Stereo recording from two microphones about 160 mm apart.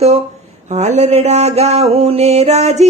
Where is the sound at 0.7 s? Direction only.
45° right (ahead or behind).